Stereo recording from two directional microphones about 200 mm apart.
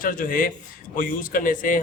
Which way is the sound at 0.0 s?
45° left (ahead or behind).